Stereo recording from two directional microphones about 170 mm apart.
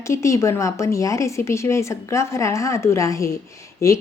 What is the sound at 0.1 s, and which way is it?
Speech, 15° left (ahead or behind).